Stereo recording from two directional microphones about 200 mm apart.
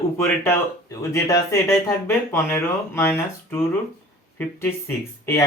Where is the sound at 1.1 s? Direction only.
15° left (ahead or behind).